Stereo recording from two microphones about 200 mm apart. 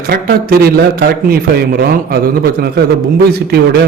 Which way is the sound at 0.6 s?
50° right (ahead or behind).